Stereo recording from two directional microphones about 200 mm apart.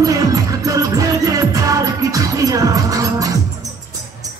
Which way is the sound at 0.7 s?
15° right (ahead or behind).